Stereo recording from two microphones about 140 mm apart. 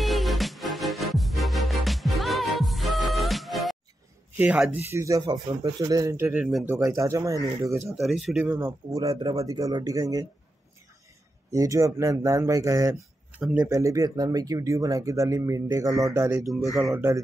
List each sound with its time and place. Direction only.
0.0 s music: centre (ahead or behind)
4.4 s speech: 10° right (ahead or behind); by 6.1 s 30° right (ahead or behind)
6.1 s speech: 15° right (ahead or behind)
6.7 s speech: 20° right (ahead or behind)
8.0 s speech: centre (ahead or behind)
8.5 s speech: 20° right (ahead or behind)
11.5 s speech: 25° right (ahead or behind)
13.3 s a man's voice: 10° right (ahead or behind)
13.7 s speech: 25° right (ahead or behind)